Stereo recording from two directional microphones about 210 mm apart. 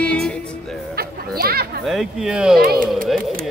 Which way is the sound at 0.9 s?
45° right (ahead or behind).